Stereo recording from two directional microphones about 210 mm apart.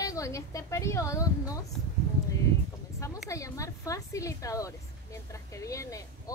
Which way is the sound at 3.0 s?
15° left (ahead or behind).